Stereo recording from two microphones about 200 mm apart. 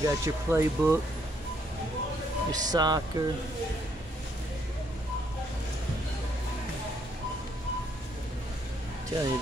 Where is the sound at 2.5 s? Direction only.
20° right (ahead or behind).